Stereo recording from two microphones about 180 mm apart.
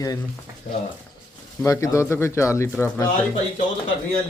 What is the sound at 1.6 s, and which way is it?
Speech, 15° left (ahead or behind).